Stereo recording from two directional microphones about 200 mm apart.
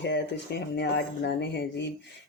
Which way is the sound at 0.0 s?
60° left (ahead or behind).